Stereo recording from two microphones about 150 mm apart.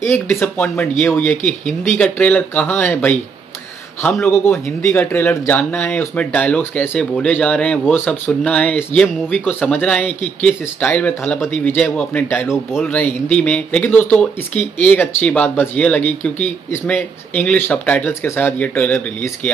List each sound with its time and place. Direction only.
0.0 s speech: 15° left (ahead or behind)